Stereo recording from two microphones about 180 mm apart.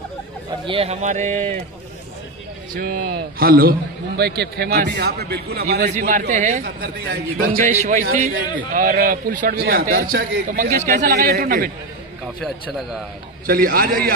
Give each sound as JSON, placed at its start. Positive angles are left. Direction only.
{"t": 0.7, "sound": "a sound", "side_deg": -35}
{"t": 2.7, "sound": "speech", "side_deg": -65}
{"t": 5.9, "sound": "a man's voice", "side_deg": -45}
{"t": 7.7, "sound": "a man's voice", "side_deg": -40}
{"t": 12.4, "sound": "a man's voice", "side_deg": 0}
{"t": 13.5, "sound": "a man's voice", "side_deg": -55}